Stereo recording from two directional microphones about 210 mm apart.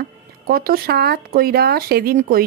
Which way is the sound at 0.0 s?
45° right (ahead or behind).